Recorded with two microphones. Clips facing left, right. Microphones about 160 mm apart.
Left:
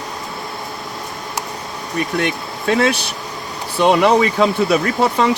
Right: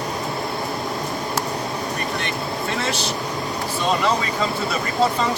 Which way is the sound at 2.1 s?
65° left (ahead or behind).